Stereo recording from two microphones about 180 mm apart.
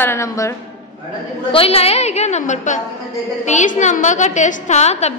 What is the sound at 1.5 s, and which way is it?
A woman's voice, 30° left (ahead or behind).